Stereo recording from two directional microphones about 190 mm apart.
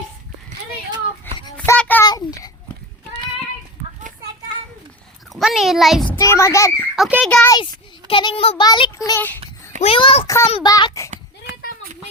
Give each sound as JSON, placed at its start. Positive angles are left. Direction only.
{"t": 1.5, "sound": "child singing", "side_deg": 5}
{"t": 2.0, "sound": "a sound", "side_deg": 20}
{"t": 5.3, "sound": "a sound", "side_deg": 0}
{"t": 6.1, "sound": "a child's voice", "side_deg": 15}
{"t": 6.9, "sound": "a child's voice", "side_deg": 0}
{"t": 7.5, "sound": "a child's voice", "side_deg": 25}
{"t": 9.8, "sound": "a child's voice", "side_deg": 30}
{"t": 10.2, "sound": "a child's voice", "side_deg": 15}